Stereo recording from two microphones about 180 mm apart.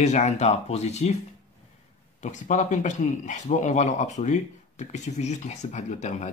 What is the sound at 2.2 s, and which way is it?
A man's voice, 45° left (ahead or behind).